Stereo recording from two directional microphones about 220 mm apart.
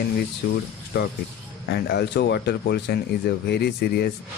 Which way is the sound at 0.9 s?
50° left (ahead or behind).